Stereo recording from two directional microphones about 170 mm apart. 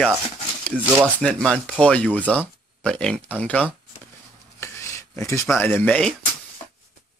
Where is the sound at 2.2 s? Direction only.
10° right (ahead or behind).